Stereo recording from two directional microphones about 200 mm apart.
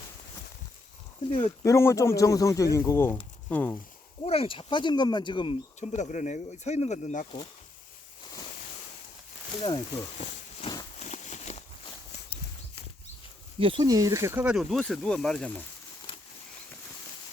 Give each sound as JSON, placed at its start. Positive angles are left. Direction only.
{"t": 1.3, "sound": "speech", "side_deg": 30}
{"t": 1.6, "sound": "speech", "side_deg": 15}
{"t": 4.3, "sound": "speech", "side_deg": 25}
{"t": 10.6, "sound": "a sound", "side_deg": 20}
{"t": 11.0, "sound": "a sound", "side_deg": 35}
{"t": 13.6, "sound": "speech", "side_deg": -25}